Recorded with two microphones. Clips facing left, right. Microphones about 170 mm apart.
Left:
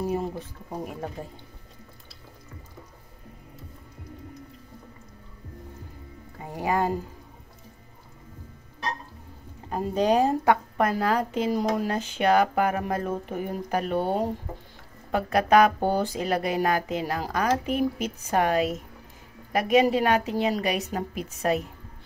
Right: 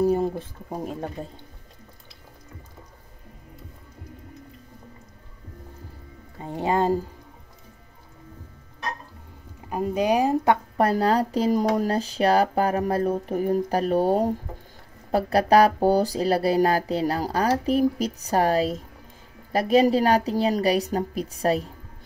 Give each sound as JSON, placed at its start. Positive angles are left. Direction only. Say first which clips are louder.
{"t": 0.0, "sound": "speech", "louder": "right 6 dB", "side_deg": -35}
{"t": 6.4, "sound": "speech", "louder": "right 3 dB", "side_deg": -25}
{"t": 9.7, "sound": "a woman's voice", "louder": "right 1 dB", "side_deg": -10}
{"t": 10.8, "sound": "speech", "louder": "right 3 dB", "side_deg": -35}